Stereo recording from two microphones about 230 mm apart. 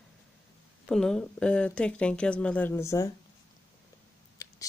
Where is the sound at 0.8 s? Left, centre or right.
Centre.